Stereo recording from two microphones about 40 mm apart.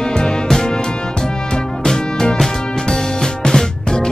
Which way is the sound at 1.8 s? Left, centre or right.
Centre.